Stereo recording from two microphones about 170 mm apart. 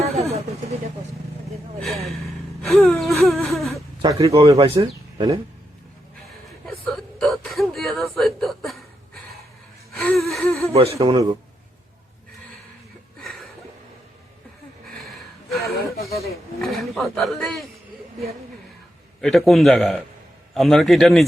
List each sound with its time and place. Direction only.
0.0 s vehicle: 40° right (ahead or behind)
1.5 s speech: centre (ahead or behind)
4.0 s speech: 20° right (ahead or behind)
4.5 s speech: 35° right (ahead or behind)
6.7 s a sound: centre (ahead or behind)
10.2 s gasp: centre (ahead or behind)
10.7 s speech: 35° right (ahead or behind)
11.0 s speech: 20° right (ahead or behind)
13.1 s a sound: centre (ahead or behind)
15.0 s gasp: centre (ahead or behind)
15.7 s a sound: 65° left (ahead or behind)
16.6 s speech: centre (ahead or behind)
19.2 s a man's voice: centre (ahead or behind)